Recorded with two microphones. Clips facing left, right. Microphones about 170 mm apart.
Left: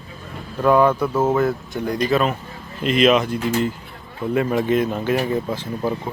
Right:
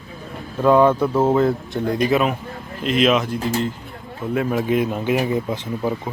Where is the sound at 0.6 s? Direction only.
20° right (ahead or behind).